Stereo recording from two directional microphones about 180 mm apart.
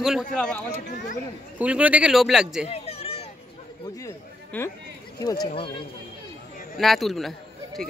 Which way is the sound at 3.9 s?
15° left (ahead or behind).